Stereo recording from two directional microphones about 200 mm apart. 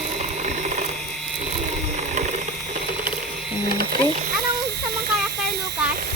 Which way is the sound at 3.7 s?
50° right (ahead or behind).